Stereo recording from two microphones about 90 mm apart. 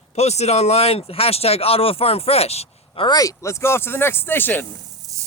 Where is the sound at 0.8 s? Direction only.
90° left.